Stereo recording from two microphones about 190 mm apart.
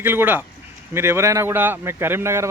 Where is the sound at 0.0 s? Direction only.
10° right (ahead or behind).